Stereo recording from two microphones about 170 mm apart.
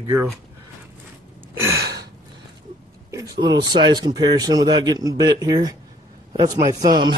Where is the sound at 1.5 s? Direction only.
15° right (ahead or behind).